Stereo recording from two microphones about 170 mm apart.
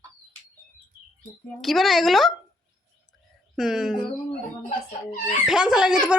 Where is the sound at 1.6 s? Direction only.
Centre (ahead or behind).